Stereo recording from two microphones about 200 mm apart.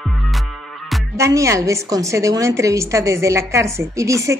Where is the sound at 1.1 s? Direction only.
15° right (ahead or behind).